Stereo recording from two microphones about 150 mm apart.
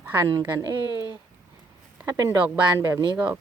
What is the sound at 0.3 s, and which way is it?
Speech, 25° right (ahead or behind).